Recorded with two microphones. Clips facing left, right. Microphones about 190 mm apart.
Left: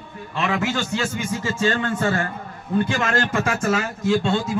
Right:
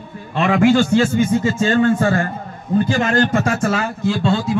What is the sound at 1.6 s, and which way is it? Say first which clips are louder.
Speech: right 5 dB; 40° right (ahead or behind).